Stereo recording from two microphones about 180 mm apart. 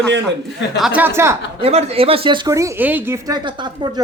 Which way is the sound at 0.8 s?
10° right (ahead or behind).